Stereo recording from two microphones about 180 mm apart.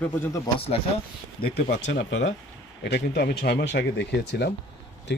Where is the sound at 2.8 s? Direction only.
65° left (ahead or behind).